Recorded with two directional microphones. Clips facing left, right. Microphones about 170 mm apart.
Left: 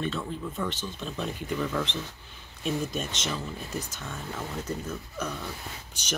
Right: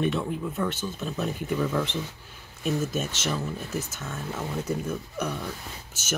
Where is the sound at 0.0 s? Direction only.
15° right (ahead or behind).